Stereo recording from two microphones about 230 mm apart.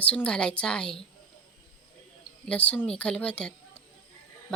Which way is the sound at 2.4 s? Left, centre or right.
Centre.